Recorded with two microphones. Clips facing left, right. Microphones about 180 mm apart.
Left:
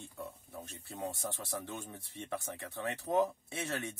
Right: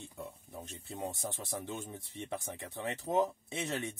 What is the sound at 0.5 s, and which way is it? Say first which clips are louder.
Speech: right 1 dB; 20° right (ahead or behind).